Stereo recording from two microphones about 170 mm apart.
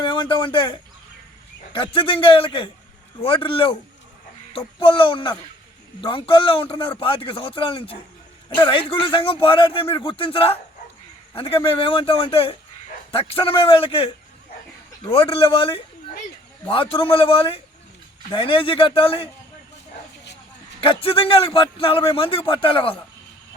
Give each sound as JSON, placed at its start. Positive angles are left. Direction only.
{"t": 0.0, "sound": "a man's voice", "side_deg": 30}
{"t": 15.1, "sound": "a man's voice", "side_deg": 35}
{"t": 20.8, "sound": "a man's voice", "side_deg": 30}